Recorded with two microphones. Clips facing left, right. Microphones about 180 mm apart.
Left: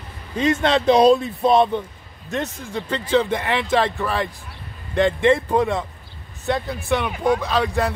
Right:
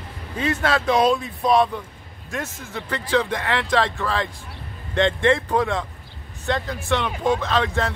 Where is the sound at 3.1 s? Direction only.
20° left (ahead or behind).